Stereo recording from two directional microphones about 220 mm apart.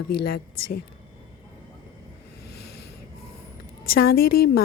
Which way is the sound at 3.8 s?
45° left (ahead or behind).